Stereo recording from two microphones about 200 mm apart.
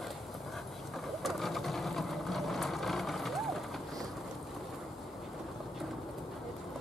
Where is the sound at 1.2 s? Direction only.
Centre (ahead or behind).